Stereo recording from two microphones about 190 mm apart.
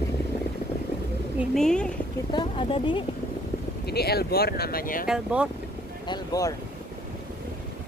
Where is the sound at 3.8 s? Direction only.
55° left (ahead or behind).